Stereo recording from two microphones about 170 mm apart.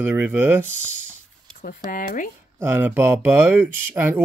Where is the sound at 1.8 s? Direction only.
50° left (ahead or behind).